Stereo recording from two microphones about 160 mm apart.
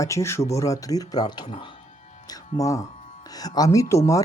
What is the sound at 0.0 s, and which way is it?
Speech, 20° left (ahead or behind).